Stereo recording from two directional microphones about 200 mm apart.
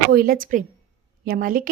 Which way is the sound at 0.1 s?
50° right (ahead or behind).